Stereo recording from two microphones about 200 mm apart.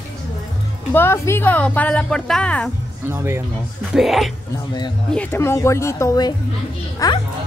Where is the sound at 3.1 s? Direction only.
15° right (ahead or behind).